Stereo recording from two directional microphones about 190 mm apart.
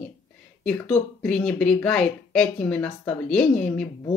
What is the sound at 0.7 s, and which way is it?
Speech, 5° left (ahead or behind).